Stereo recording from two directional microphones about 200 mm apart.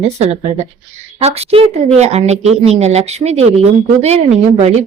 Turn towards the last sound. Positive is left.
turn(degrees=-35)  # may be behind; listen again after turning